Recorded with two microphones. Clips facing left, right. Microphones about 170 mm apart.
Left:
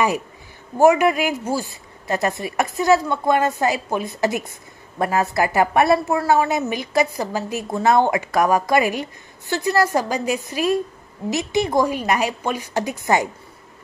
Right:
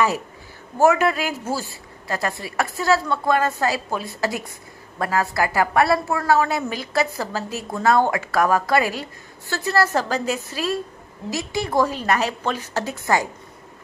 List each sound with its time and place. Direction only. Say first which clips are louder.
0.7 s a woman's voice: left 3 dB; 15° left (ahead or behind)